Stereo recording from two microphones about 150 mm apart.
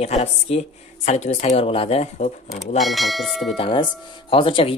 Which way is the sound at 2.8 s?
Centre (ahead or behind).